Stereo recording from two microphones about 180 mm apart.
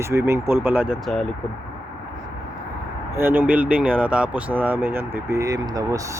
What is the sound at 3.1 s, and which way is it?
Speech, 10° right (ahead or behind).